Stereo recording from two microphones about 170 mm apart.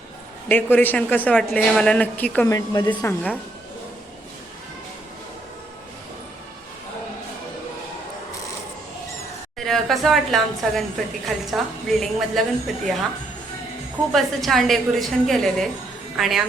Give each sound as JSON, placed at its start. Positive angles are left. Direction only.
{"t": 0.4, "sound": "a man's voice", "side_deg": 10}
{"t": 2.5, "sound": "speech", "side_deg": 25}
{"t": 9.6, "sound": "a woman's voice", "side_deg": 0}
{"t": 14.1, "sound": "a woman's voice", "side_deg": 0}